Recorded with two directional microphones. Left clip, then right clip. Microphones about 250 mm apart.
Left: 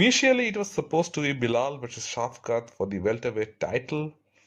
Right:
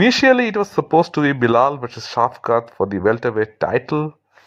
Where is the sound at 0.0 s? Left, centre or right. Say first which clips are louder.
Right 8 dB; centre.